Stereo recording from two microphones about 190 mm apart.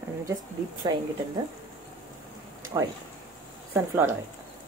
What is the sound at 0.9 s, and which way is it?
Speech, 20° right (ahead or behind).